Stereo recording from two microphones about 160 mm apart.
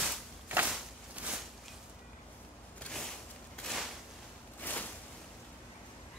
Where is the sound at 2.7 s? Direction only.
5° left (ahead or behind).